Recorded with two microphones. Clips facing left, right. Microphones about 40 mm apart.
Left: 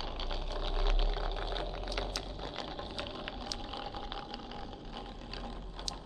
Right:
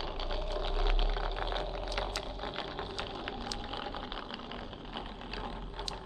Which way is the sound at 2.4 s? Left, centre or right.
Right.